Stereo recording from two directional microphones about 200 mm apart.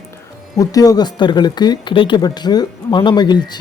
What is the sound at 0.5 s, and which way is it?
Speech, 15° left (ahead or behind).